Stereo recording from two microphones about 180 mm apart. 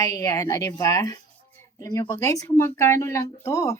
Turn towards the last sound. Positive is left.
turn(degrees=15)  # may be behind; listen again after turning